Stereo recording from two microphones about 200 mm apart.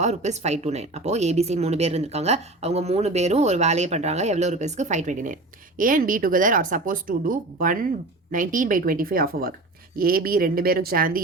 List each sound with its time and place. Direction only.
0.0 s a woman's voice: 35° right (ahead or behind)